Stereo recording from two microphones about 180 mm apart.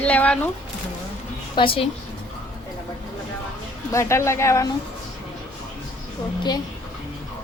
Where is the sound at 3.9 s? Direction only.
15° left (ahead or behind).